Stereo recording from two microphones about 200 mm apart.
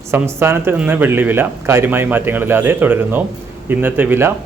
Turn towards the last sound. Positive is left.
turn(degrees=-10)  # may be behind; listen again after turning